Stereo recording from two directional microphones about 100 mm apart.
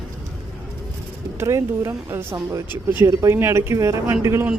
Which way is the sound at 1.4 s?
30° right (ahead or behind).